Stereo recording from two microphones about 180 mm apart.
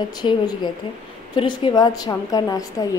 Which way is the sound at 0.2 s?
25° left (ahead or behind).